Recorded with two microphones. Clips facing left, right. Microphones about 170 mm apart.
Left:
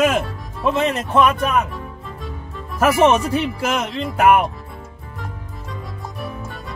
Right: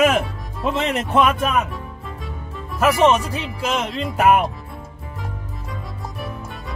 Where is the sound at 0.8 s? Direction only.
25° right (ahead or behind).